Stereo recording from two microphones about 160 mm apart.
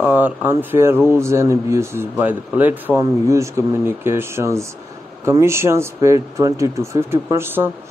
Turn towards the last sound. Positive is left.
turn(degrees=-15)  # may be behind; listen again after turning